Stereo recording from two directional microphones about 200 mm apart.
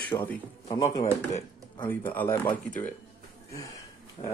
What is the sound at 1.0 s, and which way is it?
Speech, 35° left (ahead or behind).